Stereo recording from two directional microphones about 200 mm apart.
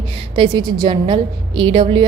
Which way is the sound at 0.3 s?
20° right (ahead or behind).